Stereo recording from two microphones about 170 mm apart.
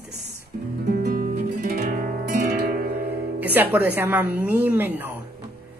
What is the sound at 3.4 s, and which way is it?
A woman's voice, 10° right (ahead or behind).